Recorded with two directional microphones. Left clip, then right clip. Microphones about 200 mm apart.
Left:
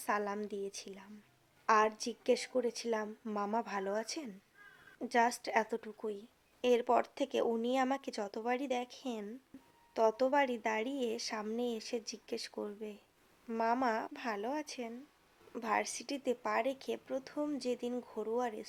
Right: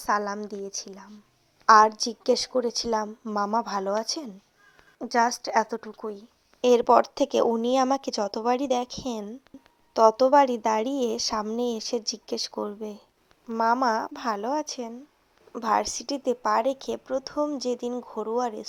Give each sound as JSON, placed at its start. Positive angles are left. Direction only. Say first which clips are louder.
{"t": 0.3, "sound": "a woman's voice", "louder": "right 7 dB", "side_deg": -20}
{"t": 9.5, "sound": "a sound", "louder": "right 8 dB", "side_deg": -15}
{"t": 9.9, "sound": "speech", "louder": "right 13 dB", "side_deg": -25}